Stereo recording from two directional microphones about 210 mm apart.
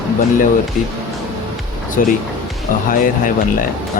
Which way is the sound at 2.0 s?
40° left (ahead or behind).